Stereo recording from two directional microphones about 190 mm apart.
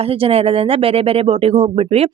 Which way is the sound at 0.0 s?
30° right (ahead or behind).